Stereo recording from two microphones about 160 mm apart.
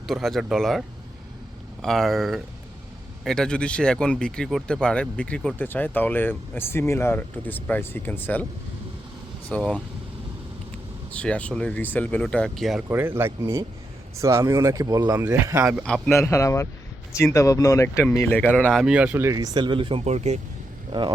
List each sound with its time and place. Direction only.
0.1 s speech: centre (ahead or behind)
9.5 s speech: 5° left (ahead or behind)
11.2 s speech: 10° left (ahead or behind)
12.9 s speech: 15° right (ahead or behind)
16.1 s speech: 20° left (ahead or behind); by 20.4 s 45° right (ahead or behind)